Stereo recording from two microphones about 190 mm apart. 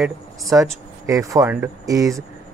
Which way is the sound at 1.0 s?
15° right (ahead or behind).